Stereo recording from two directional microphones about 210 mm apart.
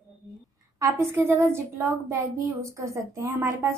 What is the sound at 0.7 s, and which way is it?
A woman's voice, 15° right (ahead or behind).